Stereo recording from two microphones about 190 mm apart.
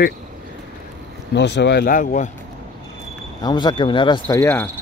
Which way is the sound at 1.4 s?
65° left (ahead or behind).